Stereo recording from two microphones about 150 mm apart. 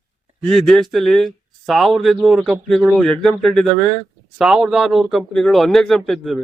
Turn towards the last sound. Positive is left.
turn(degrees=0)  # may be behind; listen again after turning